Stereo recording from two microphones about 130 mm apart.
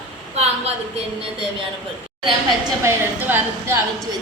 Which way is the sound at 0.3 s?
55° right (ahead or behind).